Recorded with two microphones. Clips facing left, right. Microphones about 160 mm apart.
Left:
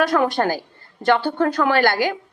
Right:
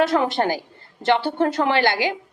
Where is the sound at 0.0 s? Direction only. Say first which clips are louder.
Left 1 dB; 25° right (ahead or behind).